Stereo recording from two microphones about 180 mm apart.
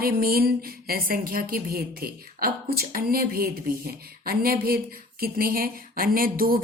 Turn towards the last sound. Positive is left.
turn(degrees=-55)  # may be behind; listen again after turning